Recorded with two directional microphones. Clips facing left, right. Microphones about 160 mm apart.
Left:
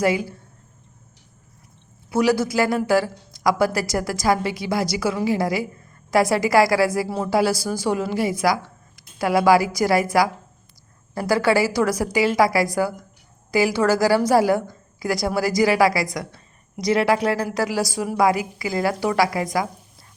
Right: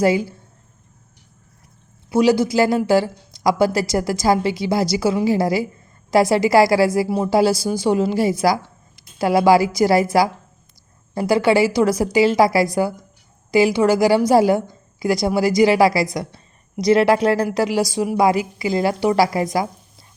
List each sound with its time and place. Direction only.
0.0 s speech: 30° right (ahead or behind)
2.1 s speech: 20° right (ahead or behind)